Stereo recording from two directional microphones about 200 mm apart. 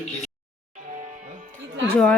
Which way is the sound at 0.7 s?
40° right (ahead or behind).